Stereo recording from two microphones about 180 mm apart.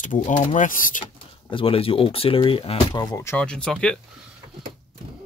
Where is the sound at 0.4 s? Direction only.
45° left (ahead or behind).